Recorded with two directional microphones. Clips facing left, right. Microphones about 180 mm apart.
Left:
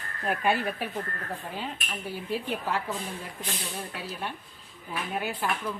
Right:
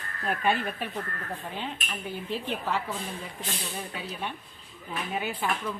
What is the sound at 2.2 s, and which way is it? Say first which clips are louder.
Speech: left 1 dB; 10° left (ahead or behind).